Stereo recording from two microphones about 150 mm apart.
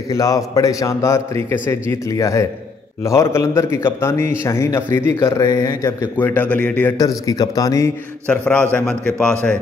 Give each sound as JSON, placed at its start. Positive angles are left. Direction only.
{"t": 0.1, "sound": "a man's voice", "side_deg": 25}
{"t": 7.0, "sound": "a man's voice", "side_deg": 25}
{"t": 8.3, "sound": "a man's voice", "side_deg": 5}